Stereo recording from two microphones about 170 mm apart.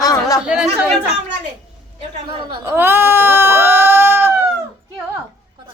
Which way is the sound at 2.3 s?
30° right (ahead or behind).